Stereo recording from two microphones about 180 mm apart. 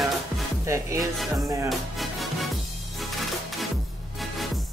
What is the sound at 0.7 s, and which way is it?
Music, 15° right (ahead or behind).